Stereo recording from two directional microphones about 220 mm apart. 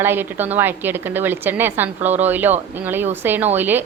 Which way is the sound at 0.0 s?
10° right (ahead or behind).